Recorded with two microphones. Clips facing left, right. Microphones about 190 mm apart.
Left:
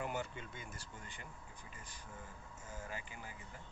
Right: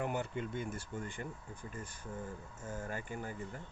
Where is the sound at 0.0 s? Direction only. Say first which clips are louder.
Right 5 dB; 55° right (ahead or behind).